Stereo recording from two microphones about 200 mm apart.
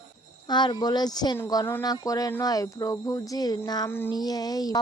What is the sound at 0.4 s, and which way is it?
A woman's voice, 20° left (ahead or behind).